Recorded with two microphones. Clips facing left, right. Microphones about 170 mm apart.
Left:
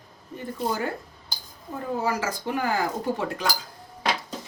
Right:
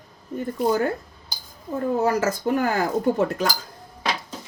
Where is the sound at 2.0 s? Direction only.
45° right (ahead or behind).